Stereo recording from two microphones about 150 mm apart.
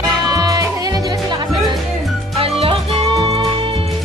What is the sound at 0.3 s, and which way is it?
Music, 25° right (ahead or behind).